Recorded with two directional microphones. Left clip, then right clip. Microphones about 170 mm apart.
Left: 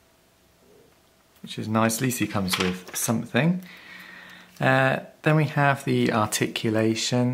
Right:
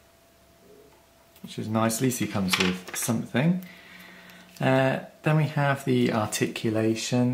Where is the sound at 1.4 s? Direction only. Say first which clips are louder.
Left 3 dB; 30° left (ahead or behind).